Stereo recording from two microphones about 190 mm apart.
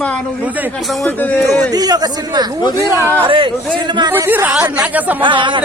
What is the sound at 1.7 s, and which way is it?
Speech, 20° right (ahead or behind).